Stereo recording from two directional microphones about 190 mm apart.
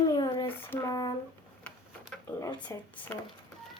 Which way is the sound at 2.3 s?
15° left (ahead or behind).